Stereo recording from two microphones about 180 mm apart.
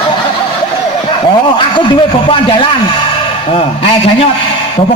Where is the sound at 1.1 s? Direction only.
30° left (ahead or behind).